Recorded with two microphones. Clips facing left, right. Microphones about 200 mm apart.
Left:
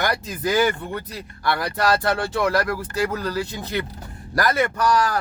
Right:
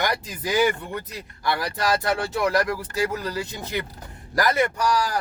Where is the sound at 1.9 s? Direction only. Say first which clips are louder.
Left 2 dB; 15° right (ahead or behind).